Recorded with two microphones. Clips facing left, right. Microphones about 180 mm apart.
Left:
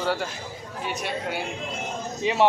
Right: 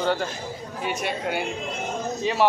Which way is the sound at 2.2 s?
20° left (ahead or behind).